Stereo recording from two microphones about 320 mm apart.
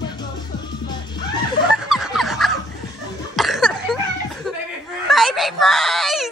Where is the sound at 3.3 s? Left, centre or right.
Centre.